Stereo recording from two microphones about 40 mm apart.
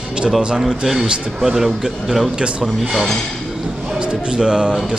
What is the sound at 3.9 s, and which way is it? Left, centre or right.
Speech, right.